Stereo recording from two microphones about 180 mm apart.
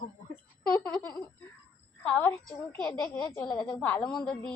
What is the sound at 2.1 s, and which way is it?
A woman's voice, 10° left (ahead or behind).